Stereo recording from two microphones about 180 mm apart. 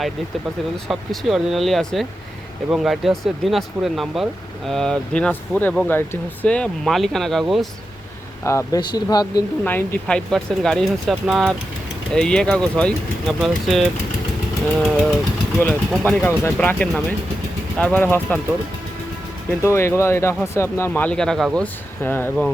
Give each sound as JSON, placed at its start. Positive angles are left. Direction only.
{"t": 0.9, "sound": "speech", "side_deg": 0}
{"t": 8.4, "sound": "speech", "side_deg": 15}
{"t": 9.6, "sound": "speech", "side_deg": 10}
{"t": 19.5, "sound": "speech", "side_deg": 15}